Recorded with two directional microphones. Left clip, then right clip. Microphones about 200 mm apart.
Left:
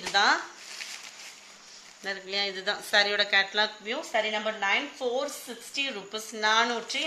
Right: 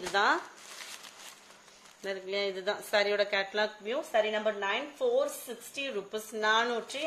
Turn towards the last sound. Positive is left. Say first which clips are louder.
# left 3 dB
turn(degrees=-50)  # may be behind; listen again after turning